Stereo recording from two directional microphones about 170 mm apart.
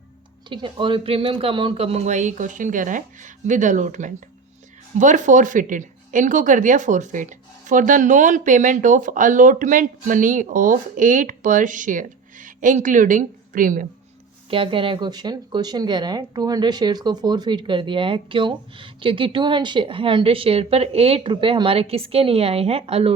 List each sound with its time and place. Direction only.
0.4 s speech: 30° right (ahead or behind); by 13.8 s 50° right (ahead or behind)
14.5 s speech: 30° right (ahead or behind)